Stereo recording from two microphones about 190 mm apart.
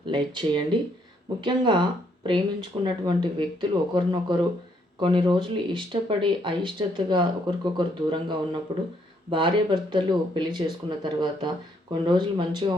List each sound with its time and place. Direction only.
0.0 s speech: 25° right (ahead or behind)